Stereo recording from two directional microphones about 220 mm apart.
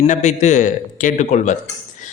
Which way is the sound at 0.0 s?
30° left (ahead or behind).